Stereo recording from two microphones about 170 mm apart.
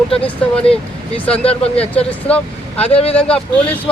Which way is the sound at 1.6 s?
35° left (ahead or behind).